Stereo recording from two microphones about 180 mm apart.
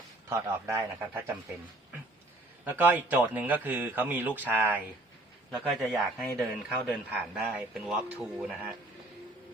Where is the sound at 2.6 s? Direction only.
10° right (ahead or behind).